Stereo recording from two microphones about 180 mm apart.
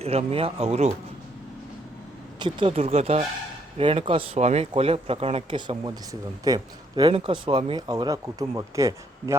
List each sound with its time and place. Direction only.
0.0 s speech: 35° right (ahead or behind)
2.4 s speech: 30° right (ahead or behind)